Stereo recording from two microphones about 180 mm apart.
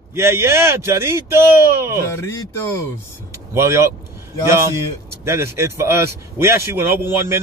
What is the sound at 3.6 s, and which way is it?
A man's voice, 15° right (ahead or behind).